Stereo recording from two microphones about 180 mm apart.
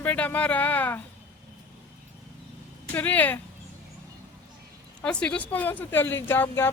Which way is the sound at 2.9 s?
10° left (ahead or behind).